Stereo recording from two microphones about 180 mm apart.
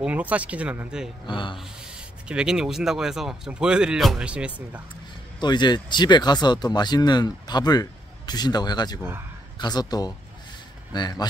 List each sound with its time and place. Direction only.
0.0 s speech: 10° right (ahead or behind)
1.2 s speech: 25° left (ahead or behind)
2.2 s speech: 5° right (ahead or behind)
5.4 s speech: 25° left (ahead or behind)